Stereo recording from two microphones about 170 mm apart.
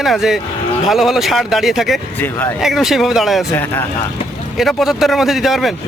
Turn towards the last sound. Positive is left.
turn(degrees=0)  # may be behind; listen again after turning